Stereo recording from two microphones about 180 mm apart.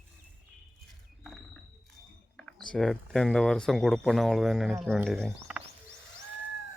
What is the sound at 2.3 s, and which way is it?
Speech, 5° left (ahead or behind).